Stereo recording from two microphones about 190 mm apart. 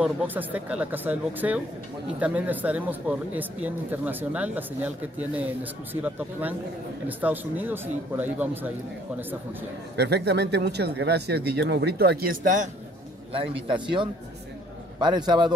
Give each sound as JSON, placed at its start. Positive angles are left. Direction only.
{"t": 0.0, "sound": "speech", "side_deg": -10}
{"t": 9.9, "sound": "speech", "side_deg": -60}
{"t": 13.6, "sound": "a man's voice", "side_deg": -25}